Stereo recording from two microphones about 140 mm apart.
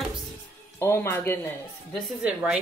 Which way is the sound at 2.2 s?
10° right (ahead or behind).